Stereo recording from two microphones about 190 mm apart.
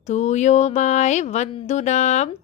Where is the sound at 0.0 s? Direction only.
35° left (ahead or behind).